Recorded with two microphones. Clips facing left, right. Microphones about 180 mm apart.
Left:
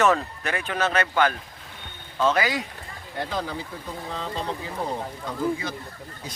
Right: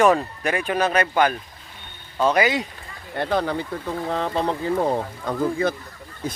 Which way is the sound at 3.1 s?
65° right (ahead or behind).